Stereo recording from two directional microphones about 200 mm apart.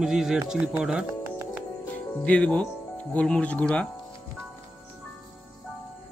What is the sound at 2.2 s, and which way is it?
Speech, 5° left (ahead or behind).